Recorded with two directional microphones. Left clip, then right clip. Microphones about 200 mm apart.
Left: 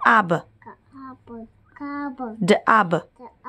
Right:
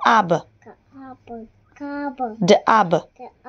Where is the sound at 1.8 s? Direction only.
Centre (ahead or behind).